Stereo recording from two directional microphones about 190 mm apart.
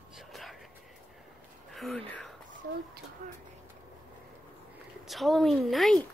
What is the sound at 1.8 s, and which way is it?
Speech, 5° left (ahead or behind).